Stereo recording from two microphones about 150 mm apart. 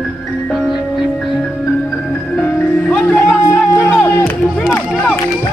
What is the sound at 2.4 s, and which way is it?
Music, 10° left (ahead or behind).